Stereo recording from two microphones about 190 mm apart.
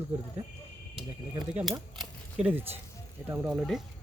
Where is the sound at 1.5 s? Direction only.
5° right (ahead or behind).